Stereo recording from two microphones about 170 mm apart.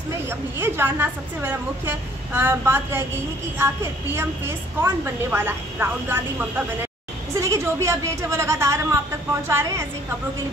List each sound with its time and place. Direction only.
0.3 s a woman's voice: 15° right (ahead or behind)
7.3 s a woman's voice: 15° right (ahead or behind)